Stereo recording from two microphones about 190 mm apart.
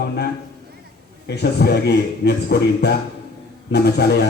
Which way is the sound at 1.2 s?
60° left (ahead or behind).